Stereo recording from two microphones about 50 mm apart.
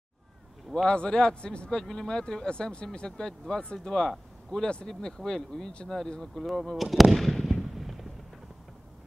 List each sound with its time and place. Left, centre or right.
0.8 s speech: centre
4.1 s a sound: centre
4.8 s speech: centre